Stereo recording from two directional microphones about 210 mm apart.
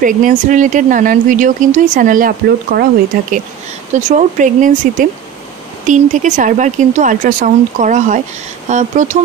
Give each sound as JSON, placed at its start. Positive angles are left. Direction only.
{"t": 0.0, "sound": "speech", "side_deg": -40}